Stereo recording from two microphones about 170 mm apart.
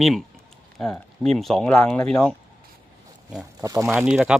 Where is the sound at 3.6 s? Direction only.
15° right (ahead or behind).